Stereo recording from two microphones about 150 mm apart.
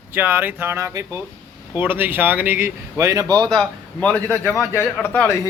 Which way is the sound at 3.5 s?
5° left (ahead or behind).